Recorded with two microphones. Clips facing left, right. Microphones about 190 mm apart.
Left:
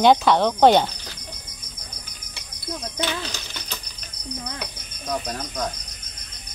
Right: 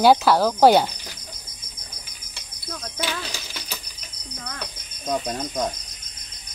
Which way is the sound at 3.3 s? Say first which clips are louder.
Even; 10° right (ahead or behind).